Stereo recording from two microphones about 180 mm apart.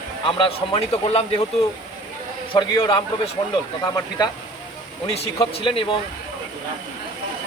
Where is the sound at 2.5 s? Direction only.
25° left (ahead or behind).